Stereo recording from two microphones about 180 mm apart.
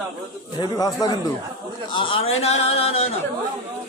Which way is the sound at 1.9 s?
30° left (ahead or behind).